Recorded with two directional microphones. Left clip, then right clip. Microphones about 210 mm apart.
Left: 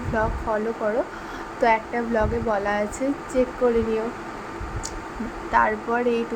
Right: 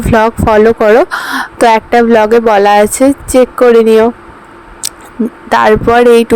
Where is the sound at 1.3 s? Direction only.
55° right (ahead or behind).